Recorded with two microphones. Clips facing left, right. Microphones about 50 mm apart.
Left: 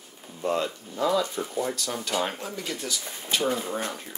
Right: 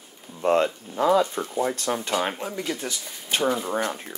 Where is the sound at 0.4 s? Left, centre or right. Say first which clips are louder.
Right 6 dB; right.